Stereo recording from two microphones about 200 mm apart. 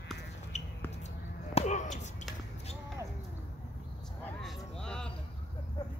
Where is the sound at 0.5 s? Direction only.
35° left (ahead or behind).